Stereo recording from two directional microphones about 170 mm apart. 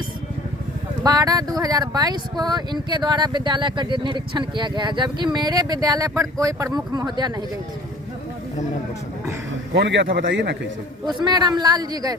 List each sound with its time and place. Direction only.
1.0 s speech: 20° right (ahead or behind)
9.7 s a man's voice: 90° right
11.0 s speech: 25° right (ahead or behind)